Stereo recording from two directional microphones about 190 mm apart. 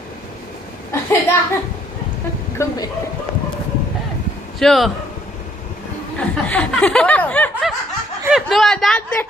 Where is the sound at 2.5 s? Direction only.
20° left (ahead or behind).